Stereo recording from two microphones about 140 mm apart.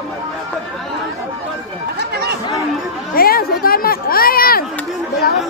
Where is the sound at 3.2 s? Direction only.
90° left.